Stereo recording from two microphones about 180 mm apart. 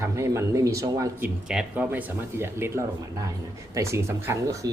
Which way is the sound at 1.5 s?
5° right (ahead or behind).